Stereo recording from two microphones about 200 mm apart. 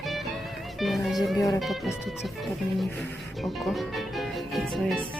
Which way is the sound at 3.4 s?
Centre (ahead or behind).